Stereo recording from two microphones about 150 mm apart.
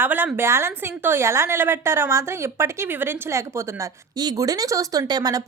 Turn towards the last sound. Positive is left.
turn(degrees=-25)  # may be behind; listen again after turning